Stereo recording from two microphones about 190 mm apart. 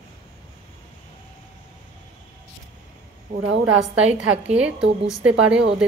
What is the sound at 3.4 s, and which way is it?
Speech, 70° right (ahead or behind).